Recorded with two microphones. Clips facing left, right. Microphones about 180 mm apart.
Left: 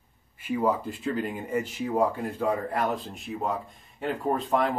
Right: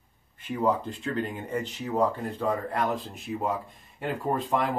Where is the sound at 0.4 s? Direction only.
5° left (ahead or behind).